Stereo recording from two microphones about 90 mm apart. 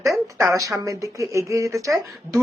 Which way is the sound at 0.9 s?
40° right (ahead or behind).